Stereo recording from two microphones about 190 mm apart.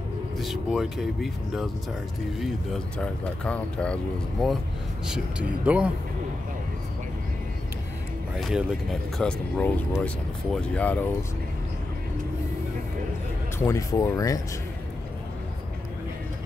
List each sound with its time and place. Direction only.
0.4 s speech: centre (ahead or behind)
3.0 s speech: 5° left (ahead or behind)
8.4 s speech: centre (ahead or behind)
13.7 s speech: 15° left (ahead or behind)